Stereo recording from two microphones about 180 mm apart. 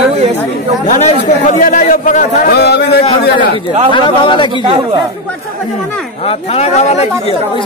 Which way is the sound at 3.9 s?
25° left (ahead or behind).